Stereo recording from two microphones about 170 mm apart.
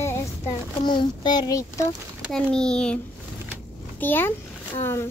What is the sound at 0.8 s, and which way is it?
A child's voice, 25° left (ahead or behind).